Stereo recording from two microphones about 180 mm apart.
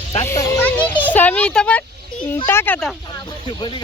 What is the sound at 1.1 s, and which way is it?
Speech, 10° left (ahead or behind).